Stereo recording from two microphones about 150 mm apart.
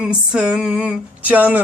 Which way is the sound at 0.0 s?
5° right (ahead or behind).